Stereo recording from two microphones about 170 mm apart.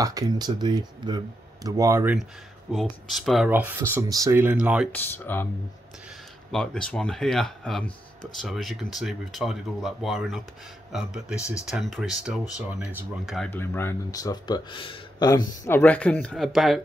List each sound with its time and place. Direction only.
0.0 s speech: 20° right (ahead or behind)
2.7 s speech: centre (ahead or behind)
3.9 s speech: 15° right (ahead or behind)
4.9 s speech: 10° left (ahead or behind)
6.5 s speech: 5° left (ahead or behind)
11.3 s speech: 15° left (ahead or behind)
11.6 s speech: centre (ahead or behind)
13.5 s speech: 15° left (ahead or behind)